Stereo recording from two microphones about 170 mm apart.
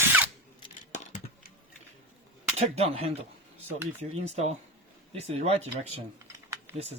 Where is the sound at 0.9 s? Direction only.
45° left (ahead or behind).